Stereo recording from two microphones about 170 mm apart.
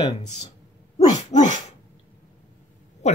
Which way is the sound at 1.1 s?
45° left (ahead or behind).